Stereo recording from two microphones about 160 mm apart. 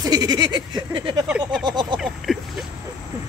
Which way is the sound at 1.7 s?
30° right (ahead or behind).